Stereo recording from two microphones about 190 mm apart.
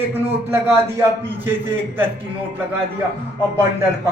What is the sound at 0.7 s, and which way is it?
Speech, 15° right (ahead or behind).